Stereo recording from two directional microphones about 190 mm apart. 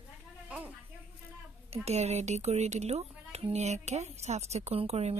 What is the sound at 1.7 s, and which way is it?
Speech, 35° right (ahead or behind).